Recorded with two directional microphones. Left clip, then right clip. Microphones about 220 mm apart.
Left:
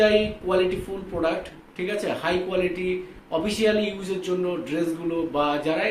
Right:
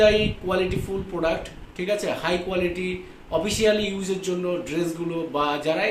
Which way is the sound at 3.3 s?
15° right (ahead or behind).